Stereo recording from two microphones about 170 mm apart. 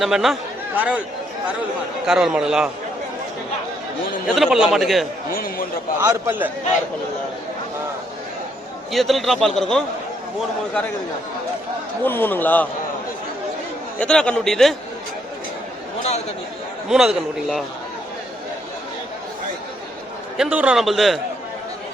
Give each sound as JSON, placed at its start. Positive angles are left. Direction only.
{"t": 0.0, "sound": "a man's voice", "side_deg": 0}
{"t": 2.0, "sound": "a man's voice", "side_deg": -5}
{"t": 4.3, "sound": "a man's voice", "side_deg": 0}
{"t": 5.3, "sound": "speech", "side_deg": 55}
{"t": 6.0, "sound": "a man's voice", "side_deg": -15}
{"t": 8.9, "sound": "a man's voice", "side_deg": 0}
{"t": 12.0, "sound": "a man's voice", "side_deg": 10}
{"t": 14.0, "sound": "a man's voice", "side_deg": 5}
{"t": 16.9, "sound": "a man's voice", "side_deg": 0}
{"t": 20.3, "sound": "a man's voice", "side_deg": -5}